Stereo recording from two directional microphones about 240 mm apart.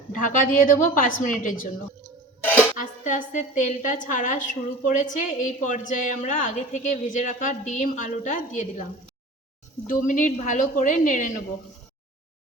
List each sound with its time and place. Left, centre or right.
0.3 s a woman's voice: left
2.4 s music: centre
2.7 s a woman's voice: left